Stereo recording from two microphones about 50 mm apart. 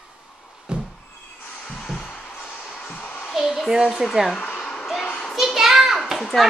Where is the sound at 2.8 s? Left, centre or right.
Left.